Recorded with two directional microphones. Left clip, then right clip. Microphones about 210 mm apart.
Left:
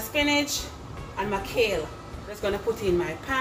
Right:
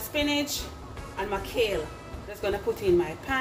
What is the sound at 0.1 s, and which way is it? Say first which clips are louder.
A woman's voice: left 3 dB; 25° right (ahead or behind).